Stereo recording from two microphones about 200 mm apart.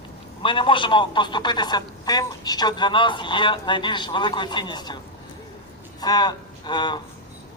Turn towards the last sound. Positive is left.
turn(degrees=20)  # may be behind; listen again after turning